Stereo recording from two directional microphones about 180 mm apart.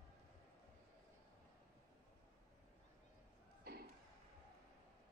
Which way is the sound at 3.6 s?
60° right (ahead or behind).